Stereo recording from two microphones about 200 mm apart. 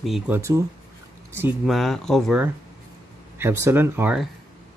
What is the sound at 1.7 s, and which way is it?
Speech, centre (ahead or behind).